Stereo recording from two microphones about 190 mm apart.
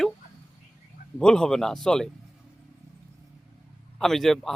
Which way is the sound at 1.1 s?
5° left (ahead or behind).